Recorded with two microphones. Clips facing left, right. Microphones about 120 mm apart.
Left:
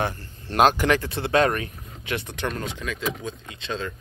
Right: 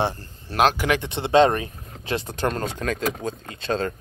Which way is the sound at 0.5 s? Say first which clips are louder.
Left 1 dB; 5° right (ahead or behind).